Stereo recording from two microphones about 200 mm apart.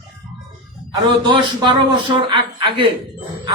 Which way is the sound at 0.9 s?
20° right (ahead or behind).